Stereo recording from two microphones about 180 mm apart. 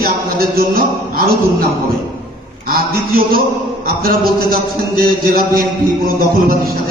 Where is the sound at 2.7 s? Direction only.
55° right (ahead or behind).